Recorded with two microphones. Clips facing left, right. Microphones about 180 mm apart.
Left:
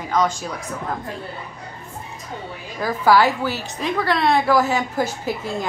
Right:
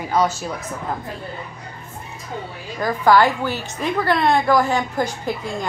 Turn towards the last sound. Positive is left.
turn(degrees=5)  # may be behind; listen again after turning